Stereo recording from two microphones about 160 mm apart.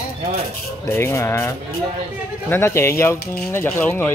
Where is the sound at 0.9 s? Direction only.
15° left (ahead or behind).